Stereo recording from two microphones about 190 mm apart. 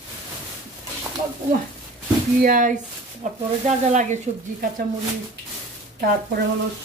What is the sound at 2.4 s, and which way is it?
Speech, 45° right (ahead or behind).